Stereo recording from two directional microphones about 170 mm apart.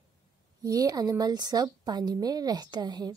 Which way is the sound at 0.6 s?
20° right (ahead or behind).